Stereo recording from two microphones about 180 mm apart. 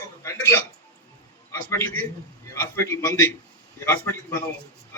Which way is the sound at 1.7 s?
15° left (ahead or behind).